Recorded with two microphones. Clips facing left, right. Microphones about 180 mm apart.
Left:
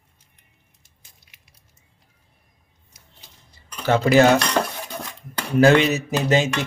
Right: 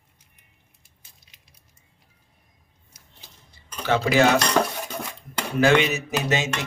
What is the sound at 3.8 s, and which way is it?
Cutlery, 45° left (ahead or behind).